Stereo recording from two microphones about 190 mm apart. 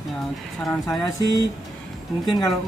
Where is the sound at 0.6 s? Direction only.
Centre (ahead or behind).